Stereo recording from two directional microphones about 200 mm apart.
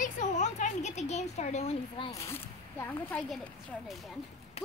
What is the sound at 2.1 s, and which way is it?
Speech, 15° left (ahead or behind).